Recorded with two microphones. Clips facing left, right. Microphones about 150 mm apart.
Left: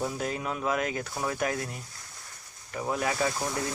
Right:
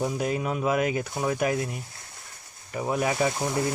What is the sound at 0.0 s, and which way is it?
Speech, 10° right (ahead or behind).